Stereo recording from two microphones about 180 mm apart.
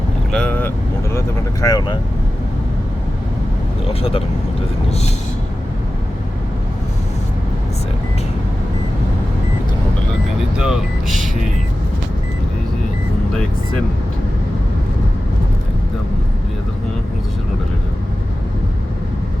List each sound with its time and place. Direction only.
0.3 s vehicle: 5° left (ahead or behind)
1.6 s speech: 20° left (ahead or behind)
10.6 s speech: 5° right (ahead or behind)